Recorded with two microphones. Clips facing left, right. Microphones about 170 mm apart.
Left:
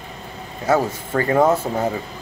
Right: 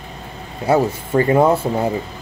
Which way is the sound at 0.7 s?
25° right (ahead or behind).